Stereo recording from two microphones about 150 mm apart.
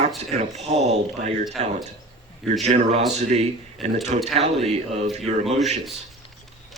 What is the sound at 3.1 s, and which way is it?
Speech, 50° right (ahead or behind).